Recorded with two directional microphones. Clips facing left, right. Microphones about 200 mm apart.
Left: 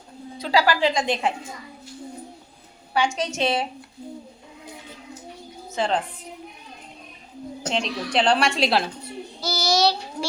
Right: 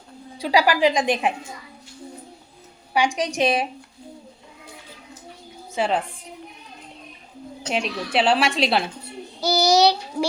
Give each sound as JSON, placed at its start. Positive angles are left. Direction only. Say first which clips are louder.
{"t": 0.3, "sound": "a woman's voice", "louder": "right 2 dB", "side_deg": -15}
{"t": 2.9, "sound": "a woman's voice", "louder": "right 2 dB", "side_deg": -15}
{"t": 5.7, "sound": "a woman's voice", "louder": "right 1 dB", "side_deg": -10}
{"t": 7.7, "sound": "a woman's voice", "louder": "right 1 dB", "side_deg": -5}
{"t": 9.4, "sound": "a woman's voice", "louder": "right 5 dB", "side_deg": -15}